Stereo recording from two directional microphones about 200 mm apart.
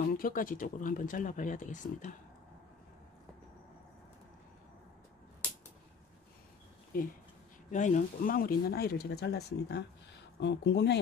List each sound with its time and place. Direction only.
0.2 s speech: 45° left (ahead or behind)
6.9 s speech: 45° left (ahead or behind)